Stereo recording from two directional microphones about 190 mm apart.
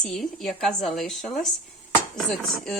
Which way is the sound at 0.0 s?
Centre (ahead or behind).